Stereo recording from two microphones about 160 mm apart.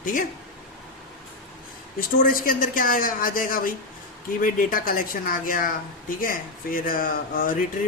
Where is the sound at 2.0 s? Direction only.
65° left (ahead or behind).